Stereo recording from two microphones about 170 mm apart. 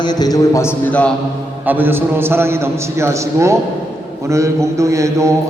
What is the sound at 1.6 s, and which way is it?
A man's voice, 10° right (ahead or behind).